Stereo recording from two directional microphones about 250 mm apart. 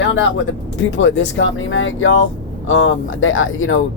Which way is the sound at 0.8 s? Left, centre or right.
Left.